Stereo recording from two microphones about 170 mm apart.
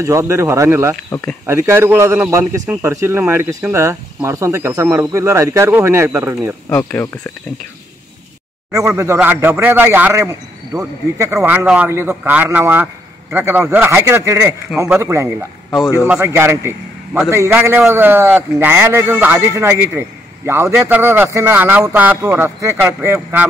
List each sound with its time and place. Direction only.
0.0 s speech: 15° right (ahead or behind)
6.7 s speech: 10° left (ahead or behind)
8.7 s a man's voice: 15° right (ahead or behind)